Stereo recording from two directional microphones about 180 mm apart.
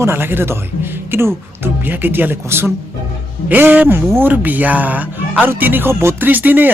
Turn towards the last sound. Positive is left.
turn(degrees=-10)  # may be behind; listen again after turning